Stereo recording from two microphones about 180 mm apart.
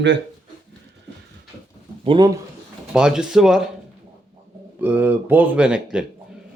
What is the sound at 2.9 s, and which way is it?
Speech, 5° right (ahead or behind).